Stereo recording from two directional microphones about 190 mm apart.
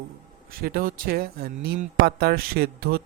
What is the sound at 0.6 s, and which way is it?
Speech, 50° right (ahead or behind).